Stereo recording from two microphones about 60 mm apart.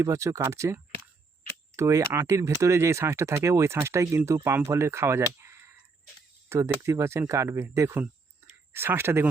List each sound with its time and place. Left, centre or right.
0.0 s speech: right
7.9 s a sound: right
8.7 s speech: right